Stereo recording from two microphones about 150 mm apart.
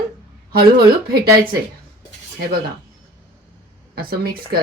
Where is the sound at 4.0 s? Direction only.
85° right.